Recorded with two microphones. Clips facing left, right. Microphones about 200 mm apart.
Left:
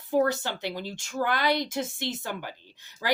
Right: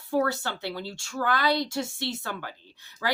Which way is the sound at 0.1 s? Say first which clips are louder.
Left 2 dB; 20° left (ahead or behind).